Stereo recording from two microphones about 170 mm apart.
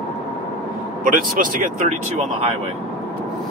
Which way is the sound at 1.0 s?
50° right (ahead or behind).